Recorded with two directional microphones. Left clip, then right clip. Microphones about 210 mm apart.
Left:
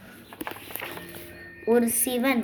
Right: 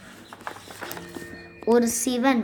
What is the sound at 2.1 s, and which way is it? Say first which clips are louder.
Speech: right 2 dB; 35° right (ahead or behind).